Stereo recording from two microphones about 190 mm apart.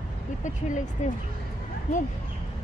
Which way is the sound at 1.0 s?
40° left (ahead or behind).